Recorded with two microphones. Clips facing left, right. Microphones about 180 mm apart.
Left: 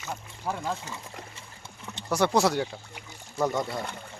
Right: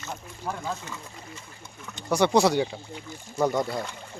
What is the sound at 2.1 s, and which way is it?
Speech, centre (ahead or behind).